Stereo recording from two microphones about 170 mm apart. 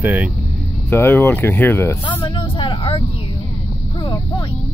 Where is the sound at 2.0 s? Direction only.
30° left (ahead or behind).